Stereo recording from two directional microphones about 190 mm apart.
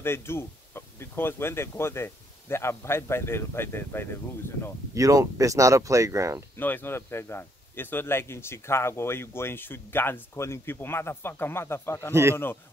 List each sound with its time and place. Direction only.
0.0 s speech: 15° left (ahead or behind)
4.9 s speech: 15° right (ahead or behind)
6.5 s speech: 10° left (ahead or behind)
12.1 s speech: 15° right (ahead or behind)